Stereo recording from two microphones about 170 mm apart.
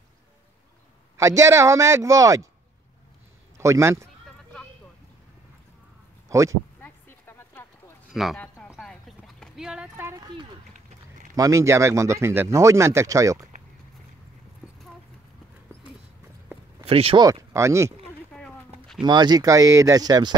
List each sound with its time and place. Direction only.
1.1 s speech: 20° right (ahead or behind)
3.5 s speech: 15° right (ahead or behind)
6.2 s speech: 20° right (ahead or behind)
6.8 s a sound: 15° left (ahead or behind)
8.1 s speech: centre (ahead or behind)
8.4 s a sound: 10° left (ahead or behind)
9.4 s speech: 5° right (ahead or behind)
11.3 s speech: 20° right (ahead or behind)
16.8 s speech: 35° right (ahead or behind)
17.2 s speech: 20° right (ahead or behind)
18.3 s a sound: 5° left (ahead or behind)
19.0 s speech: 25° right (ahead or behind)